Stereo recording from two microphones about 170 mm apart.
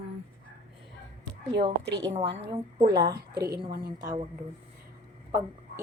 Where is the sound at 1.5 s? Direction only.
30° right (ahead or behind).